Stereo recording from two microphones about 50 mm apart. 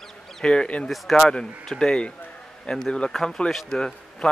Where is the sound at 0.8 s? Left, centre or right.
Centre.